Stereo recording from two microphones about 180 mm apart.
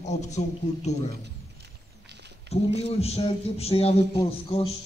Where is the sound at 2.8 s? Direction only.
35° left (ahead or behind).